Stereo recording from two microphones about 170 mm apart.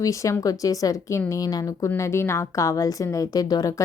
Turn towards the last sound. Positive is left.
turn(degrees=20)  # may be behind; listen again after turning